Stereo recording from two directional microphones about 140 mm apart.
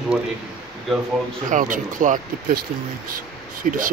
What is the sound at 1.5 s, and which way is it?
Speech, 70° right (ahead or behind).